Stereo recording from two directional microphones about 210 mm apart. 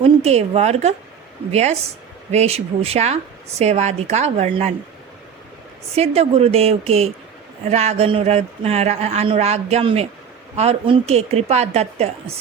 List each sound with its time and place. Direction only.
0.0 s a man's voice: 30° right (ahead or behind)
6.0 s a woman's voice: 30° right (ahead or behind)